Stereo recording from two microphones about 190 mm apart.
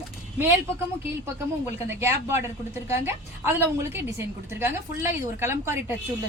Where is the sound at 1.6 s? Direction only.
15° right (ahead or behind).